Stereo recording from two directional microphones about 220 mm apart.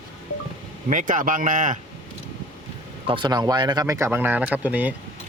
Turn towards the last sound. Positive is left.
turn(degrees=-5)  # may be behind; listen again after turning